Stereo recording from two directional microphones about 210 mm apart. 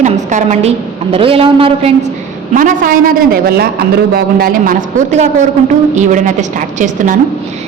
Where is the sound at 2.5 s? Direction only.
40° right (ahead or behind).